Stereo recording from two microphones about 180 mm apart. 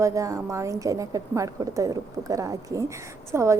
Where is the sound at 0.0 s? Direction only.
15° right (ahead or behind).